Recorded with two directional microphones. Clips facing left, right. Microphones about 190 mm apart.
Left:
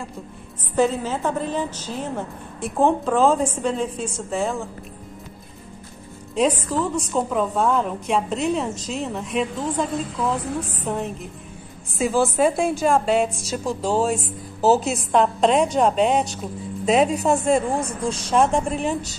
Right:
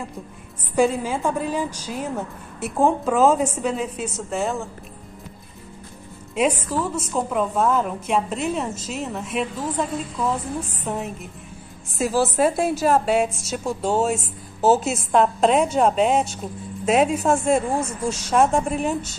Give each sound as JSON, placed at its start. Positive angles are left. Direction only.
{"t": 0.7, "sound": "a woman's voice", "side_deg": -10}
{"t": 6.3, "sound": "a woman's voice", "side_deg": -10}
{"t": 17.7, "sound": "speech", "side_deg": 35}
{"t": 18.3, "sound": "a woman's voice", "side_deg": -5}